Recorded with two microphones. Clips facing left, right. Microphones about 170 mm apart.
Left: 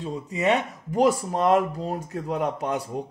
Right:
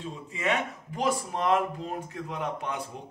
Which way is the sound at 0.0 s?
40° left (ahead or behind).